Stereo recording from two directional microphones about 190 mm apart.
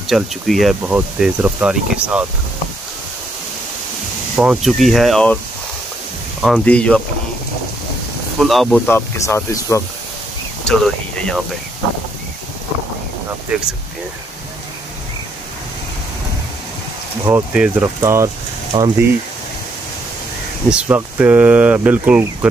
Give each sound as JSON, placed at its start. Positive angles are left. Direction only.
{"t": 0.0, "sound": "speech", "side_deg": 0}
{"t": 4.4, "sound": "speech", "side_deg": -5}
{"t": 6.4, "sound": "speech", "side_deg": 5}
{"t": 8.4, "sound": "speech", "side_deg": 0}
{"t": 8.8, "sound": "speech", "side_deg": 10}
{"t": 10.6, "sound": "speech", "side_deg": 5}
{"t": 13.5, "sound": "speech", "side_deg": -5}
{"t": 17.3, "sound": "speech", "side_deg": -10}
{"t": 20.7, "sound": "speech", "side_deg": -5}